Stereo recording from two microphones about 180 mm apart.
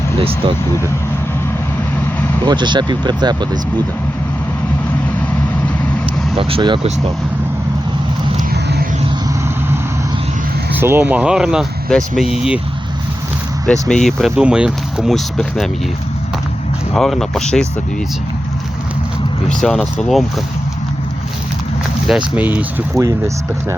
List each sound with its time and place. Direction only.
0.2 s speech: 30° right (ahead or behind)
2.4 s speech: 25° right (ahead or behind)
6.3 s speech: 30° right (ahead or behind)
10.8 s speech: 10° right (ahead or behind)
13.7 s speech: 5° left (ahead or behind)
16.9 s speech: centre (ahead or behind)
19.5 s speech: centre (ahead or behind)
22.4 s speech: 10° right (ahead or behind)